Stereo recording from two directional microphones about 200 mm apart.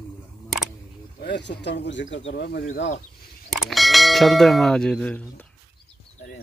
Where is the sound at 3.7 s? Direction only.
Centre (ahead or behind).